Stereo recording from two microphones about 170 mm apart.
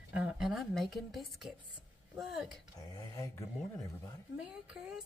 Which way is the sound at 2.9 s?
20° left (ahead or behind).